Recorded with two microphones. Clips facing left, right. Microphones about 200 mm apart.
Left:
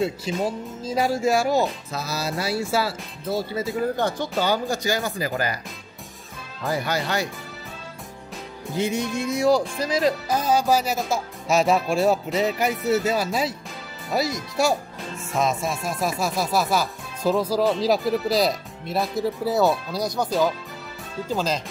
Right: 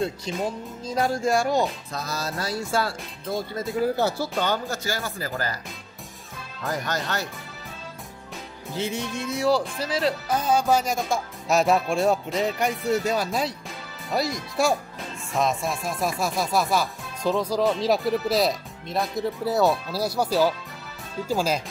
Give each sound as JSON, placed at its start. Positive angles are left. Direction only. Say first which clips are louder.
{"t": 0.0, "sound": "speech", "louder": "left 3 dB", "side_deg": 5}
{"t": 3.8, "sound": "speech", "louder": "right 3 dB", "side_deg": -5}
{"t": 4.4, "sound": "speech", "louder": "left 5 dB", "side_deg": 10}
{"t": 6.6, "sound": "speech", "louder": "left 3 dB", "side_deg": 10}
{"t": 8.7, "sound": "speech", "louder": "left 4 dB", "side_deg": 15}